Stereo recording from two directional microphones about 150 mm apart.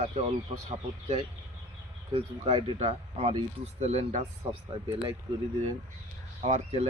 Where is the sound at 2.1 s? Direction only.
40° right (ahead or behind).